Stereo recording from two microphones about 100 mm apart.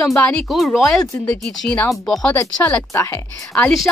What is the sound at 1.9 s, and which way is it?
Speech, centre (ahead or behind).